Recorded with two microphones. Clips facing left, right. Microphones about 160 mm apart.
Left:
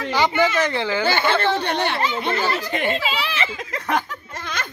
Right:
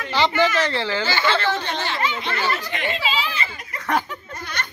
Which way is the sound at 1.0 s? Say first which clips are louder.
Left 3 dB; 60° left (ahead or behind).